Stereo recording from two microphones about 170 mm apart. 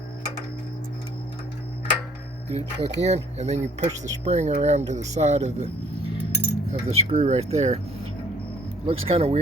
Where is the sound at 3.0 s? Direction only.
40° right (ahead or behind).